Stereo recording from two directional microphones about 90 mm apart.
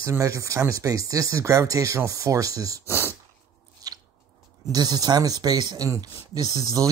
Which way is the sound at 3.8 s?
45° right (ahead or behind).